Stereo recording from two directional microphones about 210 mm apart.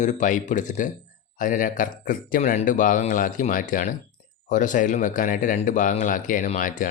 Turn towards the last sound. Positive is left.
turn(degrees=40)  # may be behind; listen again after turning